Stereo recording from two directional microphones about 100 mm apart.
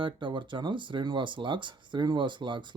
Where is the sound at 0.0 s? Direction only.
55° right (ahead or behind).